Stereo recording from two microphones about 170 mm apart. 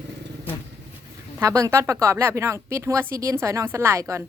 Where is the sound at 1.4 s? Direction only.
20° right (ahead or behind).